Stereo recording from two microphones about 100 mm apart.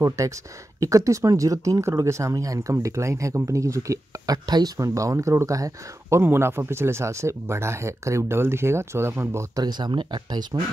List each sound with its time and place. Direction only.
0.7 s speech: 35° right (ahead or behind)
9.6 s speech: 45° right (ahead or behind)